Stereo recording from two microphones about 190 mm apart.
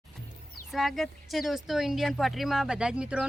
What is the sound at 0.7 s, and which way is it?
Speech, centre (ahead or behind).